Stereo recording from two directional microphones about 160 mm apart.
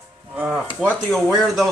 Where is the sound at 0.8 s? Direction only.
Centre (ahead or behind).